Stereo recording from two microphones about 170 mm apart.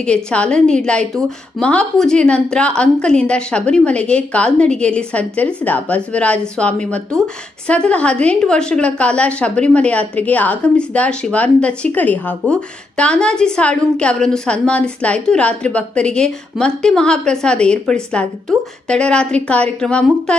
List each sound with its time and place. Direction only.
0.0 s a woman's voice: 5° left (ahead or behind)